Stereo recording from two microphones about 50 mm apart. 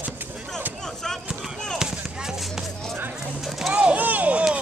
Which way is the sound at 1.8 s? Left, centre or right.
Centre.